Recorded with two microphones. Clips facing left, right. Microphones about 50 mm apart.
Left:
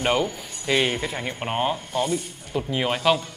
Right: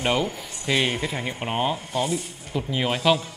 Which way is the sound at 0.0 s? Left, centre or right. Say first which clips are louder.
Left 1 dB; centre.